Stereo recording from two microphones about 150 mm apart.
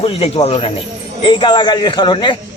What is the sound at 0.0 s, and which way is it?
A man's voice, 40° left (ahead or behind).